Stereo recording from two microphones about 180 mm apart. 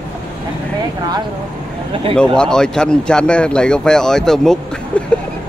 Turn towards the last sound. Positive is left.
turn(degrees=0)  # may be behind; listen again after turning